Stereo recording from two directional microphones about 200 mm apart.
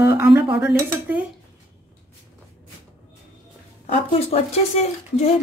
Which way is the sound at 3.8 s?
30° left (ahead or behind).